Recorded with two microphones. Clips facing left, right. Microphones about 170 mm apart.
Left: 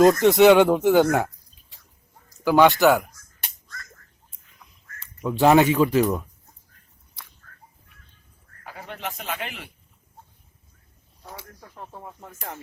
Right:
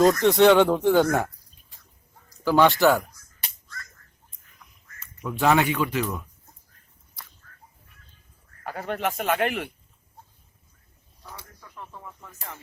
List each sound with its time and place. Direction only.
0.0 s speech: 20° left (ahead or behind)
2.4 s speech: 15° left (ahead or behind)
2.8 s speech: centre (ahead or behind)
5.2 s speech: 30° left (ahead or behind)
8.6 s speech: 55° right (ahead or behind)
11.6 s speech: 45° left (ahead or behind)